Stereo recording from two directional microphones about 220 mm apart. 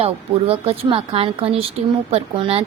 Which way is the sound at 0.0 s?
25° right (ahead or behind).